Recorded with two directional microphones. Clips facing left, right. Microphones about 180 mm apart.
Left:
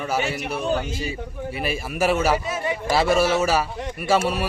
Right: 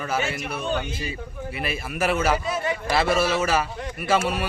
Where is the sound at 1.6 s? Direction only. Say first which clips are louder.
Left 3 dB; 5° left (ahead or behind).